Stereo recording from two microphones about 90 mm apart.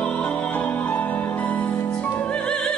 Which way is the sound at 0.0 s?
15° left (ahead or behind).